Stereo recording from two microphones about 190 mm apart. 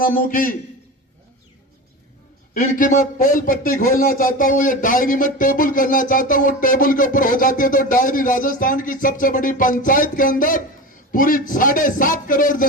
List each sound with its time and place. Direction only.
0.3 s speech: 45° left (ahead or behind)
2.6 s speech: 45° left (ahead or behind)